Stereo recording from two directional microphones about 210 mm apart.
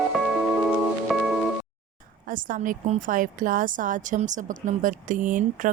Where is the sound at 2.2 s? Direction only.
40° right (ahead or behind).